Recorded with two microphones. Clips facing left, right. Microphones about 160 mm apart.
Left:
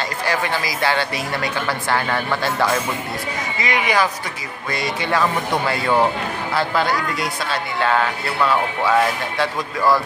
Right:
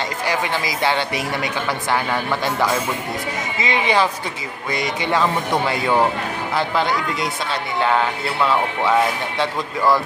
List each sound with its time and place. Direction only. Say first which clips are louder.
0.3 s a woman's voice: even; 20° right (ahead or behind)
3.5 s a woman's voice: right 1 dB; 25° right (ahead or behind)